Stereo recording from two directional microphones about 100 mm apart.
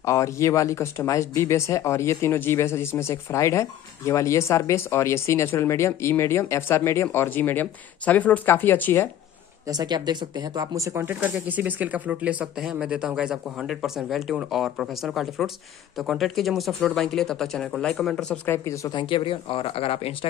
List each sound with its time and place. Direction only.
0.0 s speech: 30° left (ahead or behind)
9.7 s speech: 40° right (ahead or behind)
11.1 s speech: 15° right (ahead or behind); by 18.6 s 15° left (ahead or behind)
18.7 s speech: 45° left (ahead or behind); by 20.2 s 80° left